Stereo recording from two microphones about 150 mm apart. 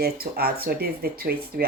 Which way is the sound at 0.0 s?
90° right.